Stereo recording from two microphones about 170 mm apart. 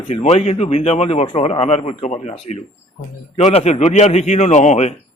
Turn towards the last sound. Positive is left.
turn(degrees=40)  # may be behind; listen again after turning